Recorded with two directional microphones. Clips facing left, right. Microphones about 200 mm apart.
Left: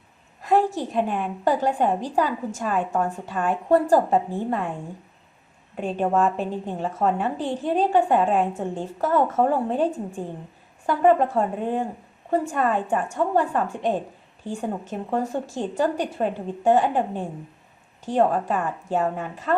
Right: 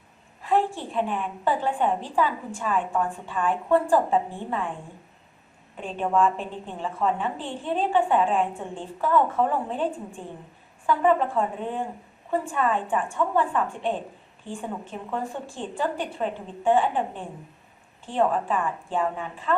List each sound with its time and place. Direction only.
0.4 s a woman's voice: 40° left (ahead or behind)
6.0 s a woman's voice: 40° left (ahead or behind)